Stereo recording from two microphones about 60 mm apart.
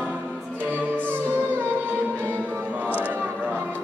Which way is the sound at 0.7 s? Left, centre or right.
Right.